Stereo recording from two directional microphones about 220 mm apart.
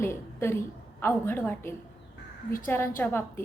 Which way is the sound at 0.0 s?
10° left (ahead or behind).